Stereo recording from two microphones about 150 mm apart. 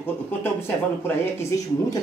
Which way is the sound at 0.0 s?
15° left (ahead or behind).